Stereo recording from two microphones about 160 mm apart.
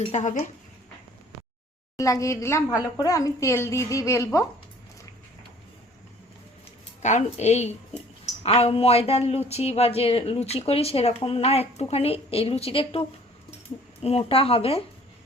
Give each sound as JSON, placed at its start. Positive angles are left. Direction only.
{"t": 0.1, "sound": "a woman's voice", "side_deg": 50}
{"t": 2.0, "sound": "a woman's voice", "side_deg": 20}
{"t": 7.0, "sound": "a woman's voice", "side_deg": 45}